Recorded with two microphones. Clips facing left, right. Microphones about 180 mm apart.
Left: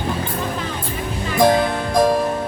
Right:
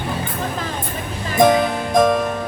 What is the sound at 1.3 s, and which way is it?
Music, 20° right (ahead or behind).